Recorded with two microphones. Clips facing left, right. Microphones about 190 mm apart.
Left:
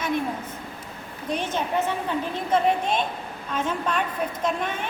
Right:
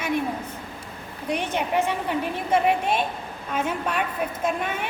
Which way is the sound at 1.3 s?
10° right (ahead or behind).